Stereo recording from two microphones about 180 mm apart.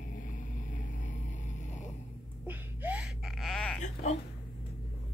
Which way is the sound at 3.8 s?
40° left (ahead or behind).